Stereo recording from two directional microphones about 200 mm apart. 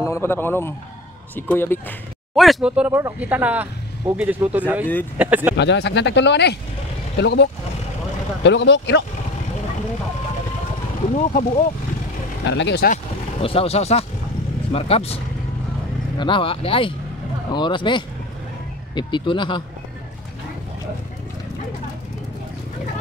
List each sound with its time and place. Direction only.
0.0 s a man's voice: 15° left (ahead or behind)
2.3 s speech: centre (ahead or behind)
5.6 s speech: 60° left (ahead or behind)
8.5 s speech: 60° left (ahead or behind)
11.1 s speech: 40° left (ahead or behind)
12.4 s speech: 60° left (ahead or behind)
12.9 s speech: 30° left (ahead or behind)
16.2 s speech: 25° left (ahead or behind)